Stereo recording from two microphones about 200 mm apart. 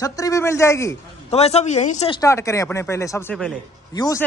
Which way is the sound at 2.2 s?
15° left (ahead or behind).